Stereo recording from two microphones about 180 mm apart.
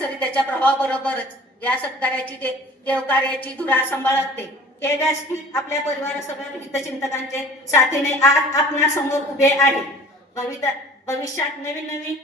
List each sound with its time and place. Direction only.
0.2 s a woman's voice: 10° left (ahead or behind)